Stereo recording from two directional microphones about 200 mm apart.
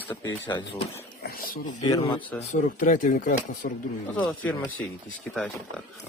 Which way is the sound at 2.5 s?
40° left (ahead or behind).